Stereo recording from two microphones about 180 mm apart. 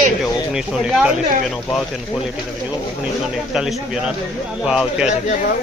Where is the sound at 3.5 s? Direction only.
Centre (ahead or behind).